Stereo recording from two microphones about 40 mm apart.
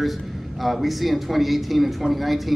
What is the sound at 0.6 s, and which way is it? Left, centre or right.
Speech, centre.